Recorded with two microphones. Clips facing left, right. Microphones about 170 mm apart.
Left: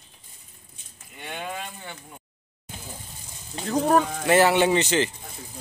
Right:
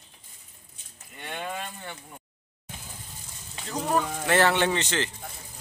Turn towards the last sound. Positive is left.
turn(degrees=10)  # may be behind; listen again after turning